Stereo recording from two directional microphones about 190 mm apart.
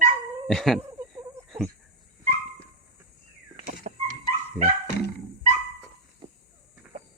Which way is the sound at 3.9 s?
40° right (ahead or behind).